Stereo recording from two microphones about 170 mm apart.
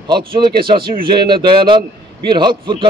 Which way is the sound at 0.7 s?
30° right (ahead or behind).